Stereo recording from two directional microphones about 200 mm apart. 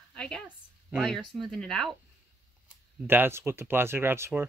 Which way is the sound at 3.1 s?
10° right (ahead or behind).